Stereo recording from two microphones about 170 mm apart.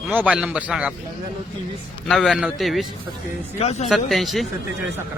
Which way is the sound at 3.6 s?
40° left (ahead or behind).